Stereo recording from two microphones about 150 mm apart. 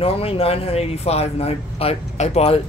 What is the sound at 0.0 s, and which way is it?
Speech, 40° left (ahead or behind).